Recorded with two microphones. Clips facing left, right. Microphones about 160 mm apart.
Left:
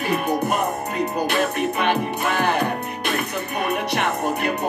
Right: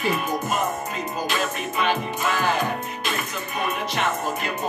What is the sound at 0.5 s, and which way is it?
Music, 60° left (ahead or behind).